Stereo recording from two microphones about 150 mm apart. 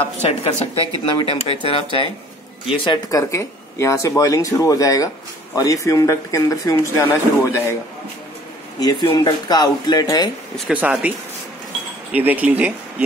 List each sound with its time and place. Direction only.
0.2 s a woman's voice: 45° left (ahead or behind)
3.1 s speech: 20° left (ahead or behind)
8.7 s speech: 25° left (ahead or behind)
10.7 s speech: 5° right (ahead or behind)